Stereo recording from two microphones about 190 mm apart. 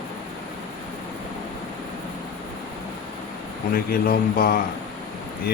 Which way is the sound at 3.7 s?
50° left (ahead or behind).